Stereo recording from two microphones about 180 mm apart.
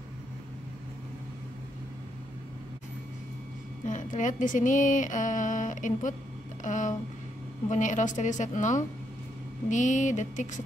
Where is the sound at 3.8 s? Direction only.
45° left (ahead or behind).